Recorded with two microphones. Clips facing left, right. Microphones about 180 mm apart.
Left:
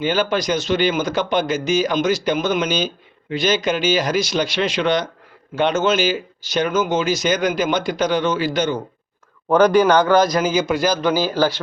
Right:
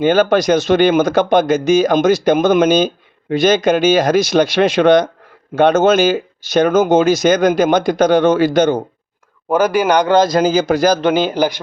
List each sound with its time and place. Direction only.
0.0 s speech: 50° right (ahead or behind)
9.5 s a man's voice: 10° right (ahead or behind); by 11.0 s 40° right (ahead or behind)
11.0 s a man's voice: 25° right (ahead or behind)